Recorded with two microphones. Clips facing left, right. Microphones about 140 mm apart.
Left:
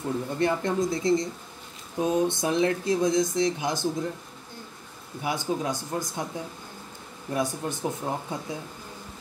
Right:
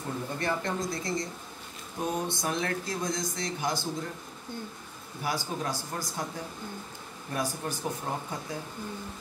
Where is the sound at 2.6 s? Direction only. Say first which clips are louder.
Left 9 dB; 20° left (ahead or behind).